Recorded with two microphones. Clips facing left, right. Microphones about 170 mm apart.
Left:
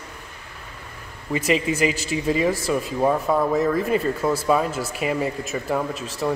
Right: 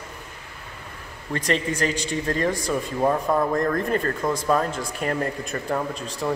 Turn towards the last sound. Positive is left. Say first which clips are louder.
# left 2 dB
turn(degrees=5)  # may be behind; listen again after turning